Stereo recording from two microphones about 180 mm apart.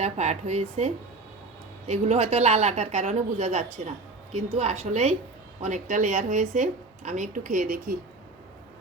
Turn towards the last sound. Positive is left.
turn(degrees=-50)  # may be behind; listen again after turning